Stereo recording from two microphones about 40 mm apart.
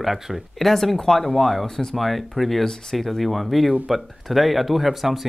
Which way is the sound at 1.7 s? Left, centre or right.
Centre.